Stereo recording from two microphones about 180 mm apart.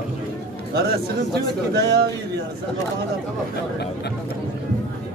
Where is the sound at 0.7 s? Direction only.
65° right (ahead or behind).